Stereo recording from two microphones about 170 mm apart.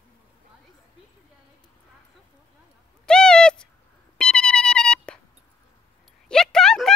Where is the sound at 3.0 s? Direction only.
5° left (ahead or behind).